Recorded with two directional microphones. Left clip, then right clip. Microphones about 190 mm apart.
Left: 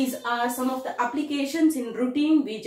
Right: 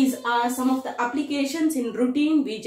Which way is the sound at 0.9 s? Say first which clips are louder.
Right 1 dB; 15° right (ahead or behind).